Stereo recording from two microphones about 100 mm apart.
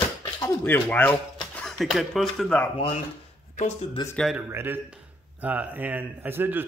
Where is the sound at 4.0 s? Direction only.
50° left (ahead or behind).